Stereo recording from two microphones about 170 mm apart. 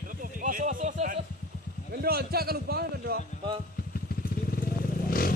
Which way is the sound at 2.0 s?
65° right (ahead or behind).